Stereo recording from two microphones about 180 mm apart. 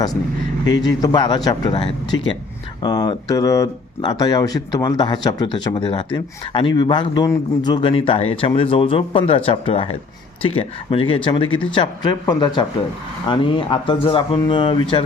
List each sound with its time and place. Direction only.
0.7 s speech: 20° left (ahead or behind)